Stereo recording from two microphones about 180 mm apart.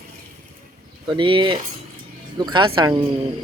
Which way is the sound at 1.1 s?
30° right (ahead or behind).